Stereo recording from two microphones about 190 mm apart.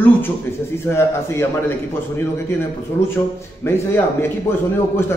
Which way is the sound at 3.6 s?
10° left (ahead or behind).